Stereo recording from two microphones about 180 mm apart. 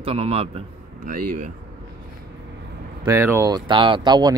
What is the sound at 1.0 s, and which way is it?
Speech, 45° right (ahead or behind).